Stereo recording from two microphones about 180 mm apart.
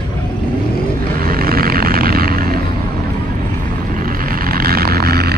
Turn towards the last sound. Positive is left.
turn(degrees=-60)  # may be behind; listen again after turning